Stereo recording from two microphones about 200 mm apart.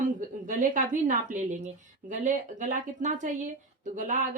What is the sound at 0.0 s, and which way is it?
A woman's voice, 40° right (ahead or behind).